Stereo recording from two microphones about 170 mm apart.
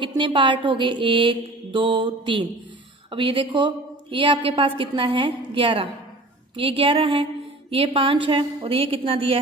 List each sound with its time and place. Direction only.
0.0 s mantra: 30° right (ahead or behind)
3.1 s a woman's voice: 30° right (ahead or behind)